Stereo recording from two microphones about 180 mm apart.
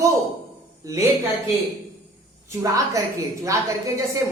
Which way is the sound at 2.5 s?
20° right (ahead or behind).